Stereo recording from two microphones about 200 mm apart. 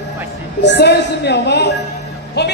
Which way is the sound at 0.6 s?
60° left (ahead or behind).